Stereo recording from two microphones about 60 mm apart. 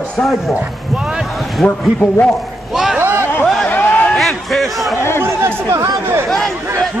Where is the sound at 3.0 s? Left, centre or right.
Right.